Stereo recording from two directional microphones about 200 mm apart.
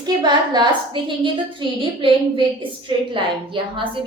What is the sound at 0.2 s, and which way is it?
A woman's voice, 20° right (ahead or behind).